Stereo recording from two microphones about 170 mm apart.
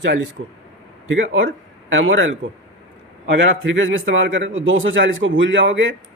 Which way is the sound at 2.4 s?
90° right.